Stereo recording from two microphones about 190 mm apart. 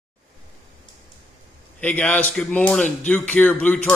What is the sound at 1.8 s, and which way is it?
Speech, 5° left (ahead or behind).